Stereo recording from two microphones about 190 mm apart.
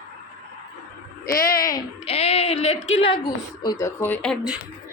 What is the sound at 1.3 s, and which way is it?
Speech, 50° left (ahead or behind).